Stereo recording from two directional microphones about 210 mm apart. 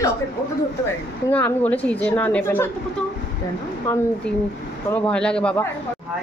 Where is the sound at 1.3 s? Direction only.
5° left (ahead or behind).